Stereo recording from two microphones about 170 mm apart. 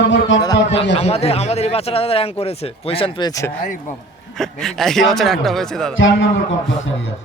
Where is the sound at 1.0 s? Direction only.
35° left (ahead or behind); by 3.5 s 20° left (ahead or behind).